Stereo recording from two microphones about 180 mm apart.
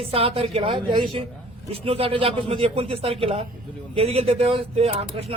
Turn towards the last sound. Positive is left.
turn(degrees=-35)  # may be behind; listen again after turning